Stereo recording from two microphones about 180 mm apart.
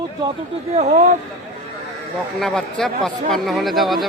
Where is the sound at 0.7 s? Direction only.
35° right (ahead or behind).